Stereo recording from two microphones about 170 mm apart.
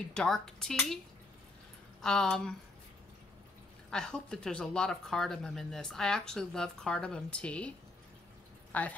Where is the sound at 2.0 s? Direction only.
5° left (ahead or behind).